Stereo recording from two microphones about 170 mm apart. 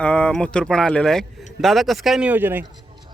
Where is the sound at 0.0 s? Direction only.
5° left (ahead or behind); by 2.6 s 10° right (ahead or behind).